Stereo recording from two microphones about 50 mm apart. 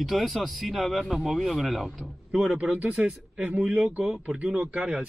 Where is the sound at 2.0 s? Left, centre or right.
Centre.